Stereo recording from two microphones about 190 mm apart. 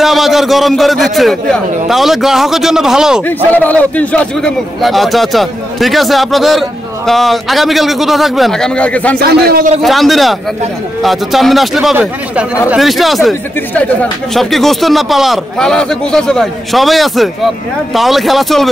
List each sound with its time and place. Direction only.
0.0 s a man's voice: centre (ahead or behind)
3.5 s a man's voice: 10° left (ahead or behind)
9.2 s a man's voice: 55° right (ahead or behind)
9.8 s a man's voice: centre (ahead or behind)